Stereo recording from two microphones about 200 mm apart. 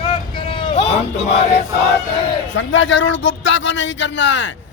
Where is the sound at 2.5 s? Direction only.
70° left (ahead or behind).